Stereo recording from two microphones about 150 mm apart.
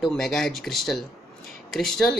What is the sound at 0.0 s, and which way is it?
Speech, 5° left (ahead or behind).